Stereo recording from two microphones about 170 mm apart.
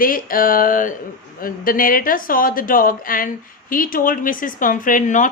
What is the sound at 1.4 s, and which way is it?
Speech, 55° left (ahead or behind).